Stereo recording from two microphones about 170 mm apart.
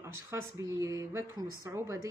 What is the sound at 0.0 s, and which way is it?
A woman's voice, 15° right (ahead or behind).